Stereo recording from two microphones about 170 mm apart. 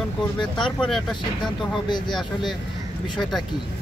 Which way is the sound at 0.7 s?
5° left (ahead or behind).